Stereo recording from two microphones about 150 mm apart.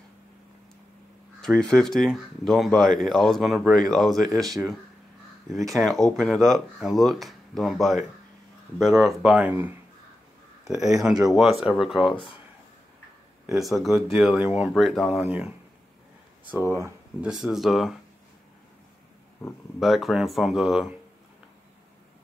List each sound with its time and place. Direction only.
1.4 s speech: 5° left (ahead or behind); by 9.7 s 10° right (ahead or behind)
11.0 s speech: 5° right (ahead or behind)
12.1 s speech: 35° left (ahead or behind)
13.5 s speech: centre (ahead or behind)
17.2 s speech: 5° right (ahead or behind)
19.8 s speech: centre (ahead or behind)